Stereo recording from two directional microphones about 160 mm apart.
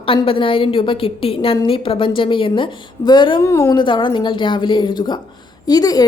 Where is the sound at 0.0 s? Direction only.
35° left (ahead or behind).